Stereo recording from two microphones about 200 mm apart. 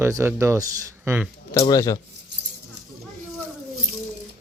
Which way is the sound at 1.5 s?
15° left (ahead or behind).